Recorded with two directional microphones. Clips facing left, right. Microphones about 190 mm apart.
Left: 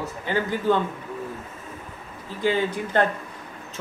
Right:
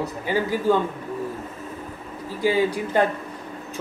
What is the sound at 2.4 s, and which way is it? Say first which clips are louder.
Speech: right 2 dB; 10° right (ahead or behind).